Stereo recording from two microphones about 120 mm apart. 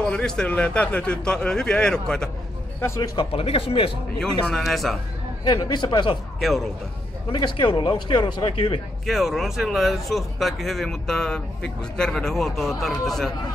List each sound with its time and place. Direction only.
0.1 s a man's voice: 5° left (ahead or behind)
3.0 s a man's voice: 40° left (ahead or behind)
3.4 s speech: 50° left (ahead or behind)
4.5 s speech: 5° left (ahead or behind)
5.4 s a man's voice: 35° left (ahead or behind)
6.4 s speech: centre (ahead or behind)
7.3 s a man's voice: 40° left (ahead or behind)
9.0 s speech: centre (ahead or behind)